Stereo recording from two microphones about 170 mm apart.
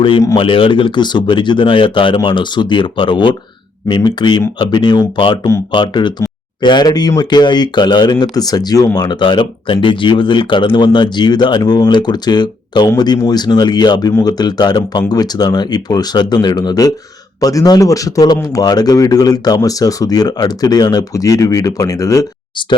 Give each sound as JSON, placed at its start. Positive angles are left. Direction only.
{"t": 0.3, "sound": "speech", "side_deg": 30}